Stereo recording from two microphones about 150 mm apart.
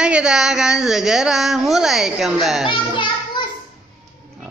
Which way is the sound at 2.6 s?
35° left (ahead or behind).